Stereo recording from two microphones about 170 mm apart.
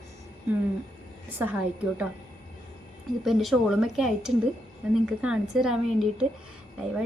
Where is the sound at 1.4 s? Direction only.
10° right (ahead or behind).